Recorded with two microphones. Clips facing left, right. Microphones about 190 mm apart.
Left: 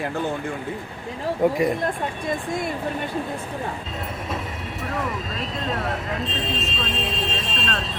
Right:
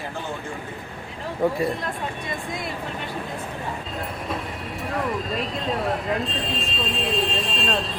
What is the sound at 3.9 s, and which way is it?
Vehicle, centre (ahead or behind).